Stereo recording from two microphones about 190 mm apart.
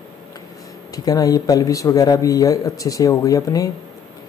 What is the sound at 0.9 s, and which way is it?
A man's voice, 20° left (ahead or behind).